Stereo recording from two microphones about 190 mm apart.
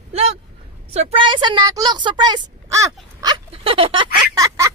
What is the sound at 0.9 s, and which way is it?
Speech, 30° right (ahead or behind).